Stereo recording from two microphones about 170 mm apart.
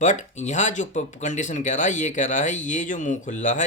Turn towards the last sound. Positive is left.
turn(degrees=45)  # may be behind; listen again after turning